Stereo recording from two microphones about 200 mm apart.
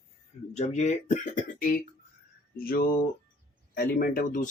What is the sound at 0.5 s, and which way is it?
Speech, 35° left (ahead or behind).